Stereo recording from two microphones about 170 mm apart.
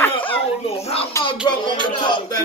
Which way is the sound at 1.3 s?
25° left (ahead or behind).